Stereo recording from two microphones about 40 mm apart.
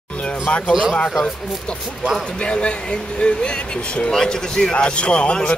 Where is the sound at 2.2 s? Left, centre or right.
Left.